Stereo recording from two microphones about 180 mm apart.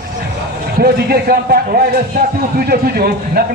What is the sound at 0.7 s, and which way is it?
A man's voice, 55° right (ahead or behind).